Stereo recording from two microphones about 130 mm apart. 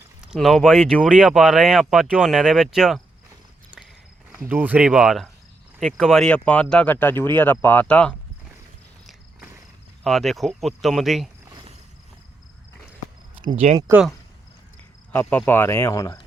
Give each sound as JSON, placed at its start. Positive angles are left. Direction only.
{"t": 0.2, "sound": "speech", "side_deg": -5}
{"t": 4.4, "sound": "speech", "side_deg": -15}
{"t": 10.0, "sound": "speech", "side_deg": 0}
{"t": 13.9, "sound": "speech", "side_deg": -15}
{"t": 15.1, "sound": "speech", "side_deg": 10}